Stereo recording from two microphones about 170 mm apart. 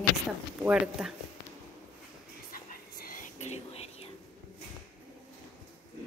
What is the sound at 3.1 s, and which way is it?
Whispering, 50° left (ahead or behind).